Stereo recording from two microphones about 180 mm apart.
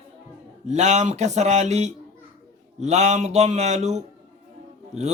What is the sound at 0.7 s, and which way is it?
Music, 40° right (ahead or behind).